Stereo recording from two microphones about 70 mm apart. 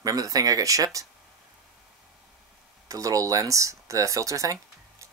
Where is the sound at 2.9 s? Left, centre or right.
Right.